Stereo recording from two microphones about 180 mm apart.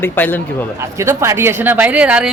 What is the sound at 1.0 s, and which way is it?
A woman's voice, 15° right (ahead or behind).